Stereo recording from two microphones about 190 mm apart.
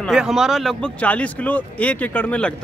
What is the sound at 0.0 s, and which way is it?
Speech, centre (ahead or behind).